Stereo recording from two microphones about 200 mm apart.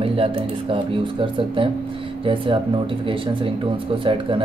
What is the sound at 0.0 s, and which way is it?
Speech, 30° right (ahead or behind).